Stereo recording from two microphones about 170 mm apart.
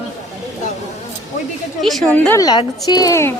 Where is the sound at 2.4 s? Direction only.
25° left (ahead or behind).